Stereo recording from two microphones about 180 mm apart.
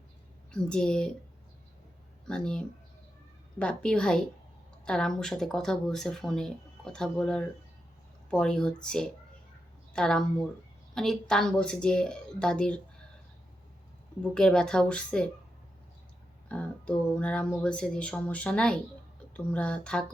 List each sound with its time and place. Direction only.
0.5 s speech: 5° left (ahead or behind)
2.2 s speech: 5° left (ahead or behind)
14.2 s speech: 5° left (ahead or behind)
16.5 s speech: 5° left (ahead or behind)